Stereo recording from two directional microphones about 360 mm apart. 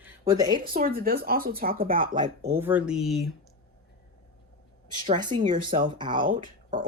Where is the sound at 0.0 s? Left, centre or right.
Centre.